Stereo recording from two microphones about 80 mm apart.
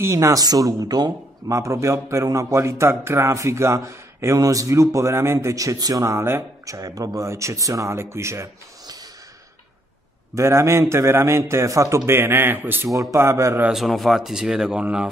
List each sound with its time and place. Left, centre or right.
0.0 s a man's voice: right
0.4 s speech: right
1.5 s a man's voice: right
4.4 s a man's voice: right
10.3 s a man's voice: right
12.1 s a man's voice: right
13.0 s a man's voice: right
13.7 s speech: centre